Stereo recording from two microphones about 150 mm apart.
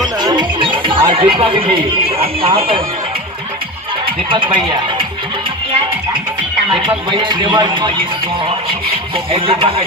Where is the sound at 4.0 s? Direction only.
35° right (ahead or behind).